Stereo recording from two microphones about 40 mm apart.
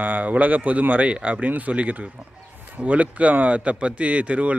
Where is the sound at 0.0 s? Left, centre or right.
Right.